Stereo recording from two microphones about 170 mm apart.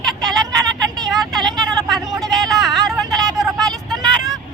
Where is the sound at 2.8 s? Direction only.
20° right (ahead or behind).